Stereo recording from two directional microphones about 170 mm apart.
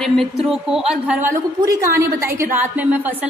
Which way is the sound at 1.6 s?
20° right (ahead or behind).